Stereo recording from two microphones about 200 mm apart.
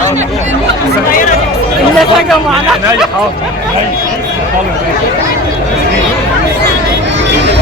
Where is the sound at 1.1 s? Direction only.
40° left (ahead or behind).